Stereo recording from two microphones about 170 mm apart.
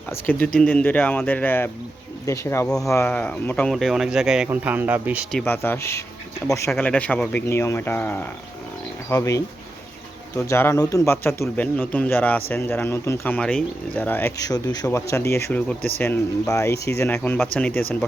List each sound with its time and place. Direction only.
0.1 s speech: 10° left (ahead or behind)
2.6 s speech: 5° left (ahead or behind)
5.3 s speech: 10° left (ahead or behind)
16.7 s speech: 75° left (ahead or behind)
17.0 s speech: 10° left (ahead or behind)